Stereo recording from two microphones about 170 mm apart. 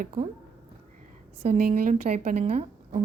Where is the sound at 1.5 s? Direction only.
55° right (ahead or behind).